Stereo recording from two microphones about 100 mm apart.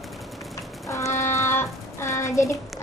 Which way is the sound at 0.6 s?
30° left (ahead or behind).